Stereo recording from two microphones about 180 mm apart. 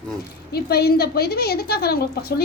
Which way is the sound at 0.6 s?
60° left (ahead or behind).